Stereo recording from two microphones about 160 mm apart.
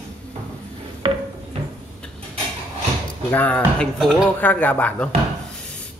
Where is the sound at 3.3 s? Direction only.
10° left (ahead or behind).